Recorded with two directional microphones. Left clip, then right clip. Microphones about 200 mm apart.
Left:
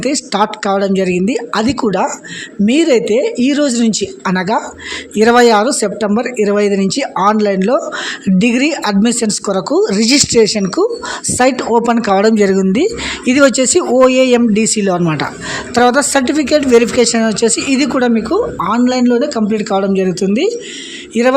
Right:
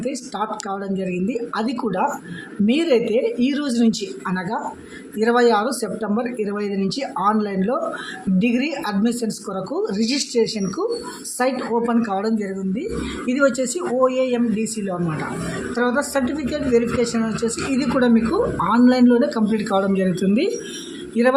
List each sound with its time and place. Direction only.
0.0 s speech: 45° left (ahead or behind)